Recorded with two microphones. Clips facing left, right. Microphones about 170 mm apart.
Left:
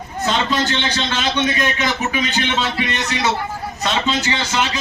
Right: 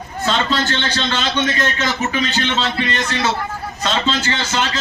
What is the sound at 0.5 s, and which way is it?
A man's voice, 15° left (ahead or behind).